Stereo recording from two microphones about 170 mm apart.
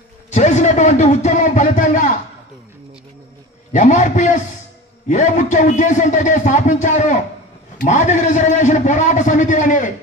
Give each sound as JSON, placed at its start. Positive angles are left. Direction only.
{"t": 0.3, "sound": "a man's voice", "side_deg": 45}
{"t": 3.7, "sound": "a man's voice", "side_deg": 45}